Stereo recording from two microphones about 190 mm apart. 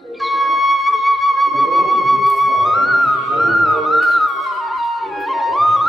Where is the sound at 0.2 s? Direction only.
Centre (ahead or behind).